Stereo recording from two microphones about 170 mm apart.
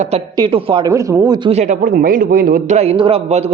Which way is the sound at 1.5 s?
40° right (ahead or behind).